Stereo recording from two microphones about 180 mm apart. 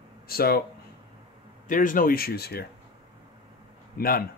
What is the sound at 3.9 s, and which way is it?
Speech, 55° left (ahead or behind).